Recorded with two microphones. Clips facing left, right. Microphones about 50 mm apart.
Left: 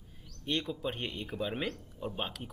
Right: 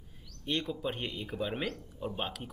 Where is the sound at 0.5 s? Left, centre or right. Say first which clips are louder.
Even; centre.